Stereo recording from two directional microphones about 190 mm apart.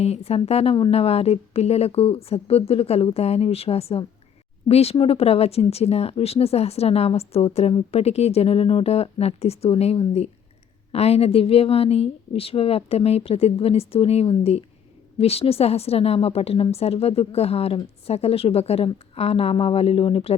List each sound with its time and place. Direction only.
0.0 s speech: 30° left (ahead or behind)